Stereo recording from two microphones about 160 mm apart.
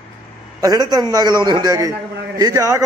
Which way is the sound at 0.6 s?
25° right (ahead or behind).